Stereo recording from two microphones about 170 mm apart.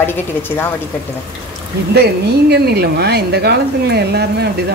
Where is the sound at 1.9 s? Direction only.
70° right (ahead or behind).